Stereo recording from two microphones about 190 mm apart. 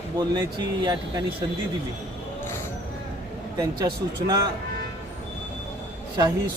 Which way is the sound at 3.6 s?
20° right (ahead or behind).